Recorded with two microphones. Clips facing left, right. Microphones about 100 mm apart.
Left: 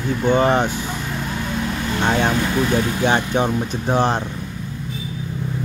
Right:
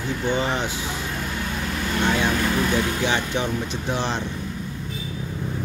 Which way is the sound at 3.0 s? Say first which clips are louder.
Left 5 dB; 45° left (ahead or behind).